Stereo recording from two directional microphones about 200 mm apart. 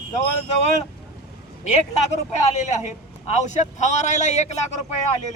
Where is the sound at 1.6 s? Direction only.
35° left (ahead or behind).